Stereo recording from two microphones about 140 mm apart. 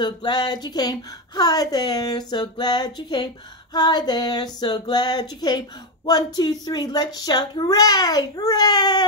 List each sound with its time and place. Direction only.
0.0 s speech: 30° left (ahead or behind)